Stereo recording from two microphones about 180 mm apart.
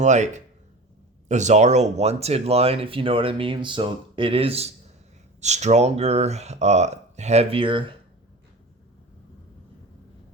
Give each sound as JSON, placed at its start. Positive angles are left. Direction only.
{"t": 0.0, "sound": "speech", "side_deg": -40}